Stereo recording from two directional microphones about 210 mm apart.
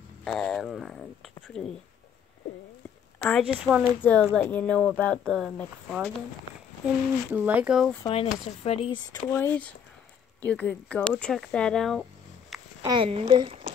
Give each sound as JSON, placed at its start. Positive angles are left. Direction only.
{"t": 0.2, "sound": "speech", "side_deg": 5}
{"t": 3.2, "sound": "speech", "side_deg": 5}
{"t": 3.4, "sound": "speech", "side_deg": -5}
{"t": 4.0, "sound": "speech", "side_deg": 5}
{"t": 7.3, "sound": "speech", "side_deg": -5}
{"t": 8.1, "sound": "speech", "side_deg": 30}
{"t": 12.8, "sound": "speech", "side_deg": -25}